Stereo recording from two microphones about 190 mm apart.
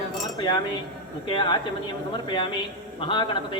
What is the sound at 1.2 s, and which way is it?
A man's voice, 25° left (ahead or behind).